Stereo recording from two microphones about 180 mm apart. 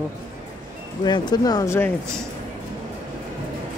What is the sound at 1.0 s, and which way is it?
Speech, 25° left (ahead or behind).